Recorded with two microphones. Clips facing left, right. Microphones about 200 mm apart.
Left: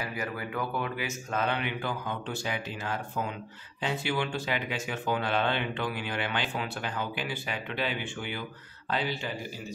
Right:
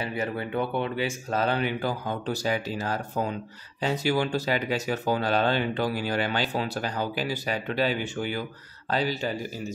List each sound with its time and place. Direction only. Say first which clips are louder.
0.0 s speech: right 5 dB; 30° right (ahead or behind)